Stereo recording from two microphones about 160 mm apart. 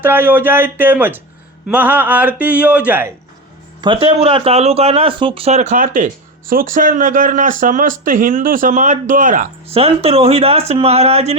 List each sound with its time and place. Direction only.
0.0 s a man's voice: 15° right (ahead or behind)
3.8 s speech: 30° right (ahead or behind); by 9.5 s 55° right (ahead or behind)
9.6 s speech: 40° right (ahead or behind)